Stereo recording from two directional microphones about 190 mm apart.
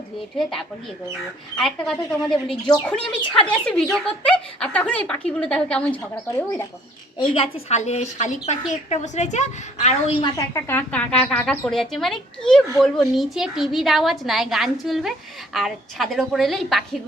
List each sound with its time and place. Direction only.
1.5 s a woman's voice: centre (ahead or behind)
3.2 s a woman's voice: 25° left (ahead or behind)
3.6 s a woman's voice: 5° left (ahead or behind)
7.2 s speech: 30° left (ahead or behind)
10.3 s a woman's voice: 15° left (ahead or behind)